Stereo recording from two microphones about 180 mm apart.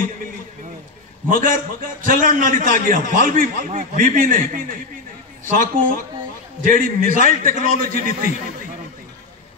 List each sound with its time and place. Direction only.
1.3 s a man's voice: 50° right (ahead or behind)